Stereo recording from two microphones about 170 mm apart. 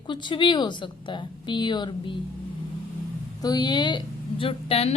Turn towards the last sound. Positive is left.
turn(degrees=35)  # may be behind; listen again after turning